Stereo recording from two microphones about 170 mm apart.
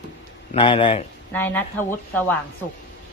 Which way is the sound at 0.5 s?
30° left (ahead or behind).